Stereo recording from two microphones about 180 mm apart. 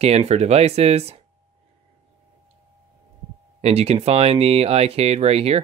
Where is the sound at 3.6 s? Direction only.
35° right (ahead or behind).